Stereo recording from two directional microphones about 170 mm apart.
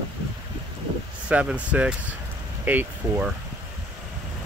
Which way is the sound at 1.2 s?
5° right (ahead or behind).